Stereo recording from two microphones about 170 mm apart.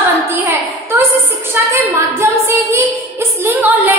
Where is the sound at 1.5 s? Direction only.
15° right (ahead or behind).